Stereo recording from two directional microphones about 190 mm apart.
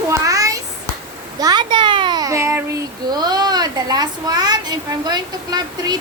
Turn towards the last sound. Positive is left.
turn(degrees=-20)  # may be behind; listen again after turning